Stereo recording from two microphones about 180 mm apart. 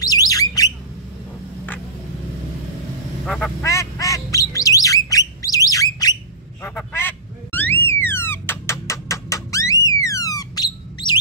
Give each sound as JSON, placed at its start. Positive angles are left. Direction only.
{"t": 0.0, "sound": "bird", "side_deg": 20}
{"t": 3.3, "sound": "quack", "side_deg": 5}
{"t": 3.6, "sound": "squawk", "side_deg": 15}
{"t": 6.6, "sound": "honk", "side_deg": 10}
{"t": 8.0, "sound": "music", "side_deg": 10}